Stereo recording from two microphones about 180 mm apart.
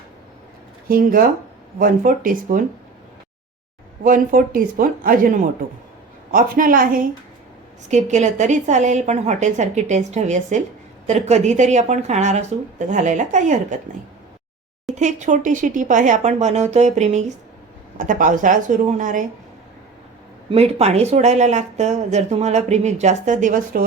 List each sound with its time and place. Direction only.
0.9 s speech: 55° right (ahead or behind)
4.0 s speech: 50° right (ahead or behind)
7.9 s speech: 40° right (ahead or behind)
14.9 s speech: 40° right (ahead or behind)
20.5 s speech: 35° right (ahead or behind)